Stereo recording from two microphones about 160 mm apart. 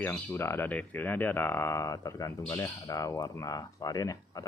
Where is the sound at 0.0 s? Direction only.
15° left (ahead or behind).